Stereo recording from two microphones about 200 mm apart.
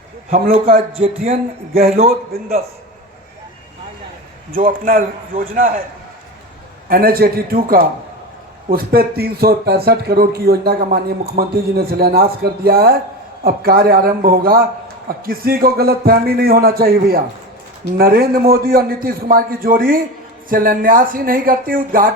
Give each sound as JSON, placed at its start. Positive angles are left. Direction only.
{"t": 0.3, "sound": "speech", "side_deg": -40}
{"t": 0.9, "sound": "speech", "side_deg": -30}
{"t": 1.3, "sound": "speech", "side_deg": -50}
{"t": 4.5, "sound": "a man's voice", "side_deg": -45}
{"t": 6.8, "sound": "speech", "side_deg": -45}